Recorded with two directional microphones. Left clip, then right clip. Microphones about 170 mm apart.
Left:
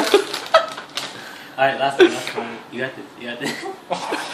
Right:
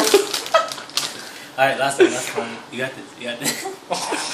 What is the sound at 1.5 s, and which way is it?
Speech, 40° right (ahead or behind).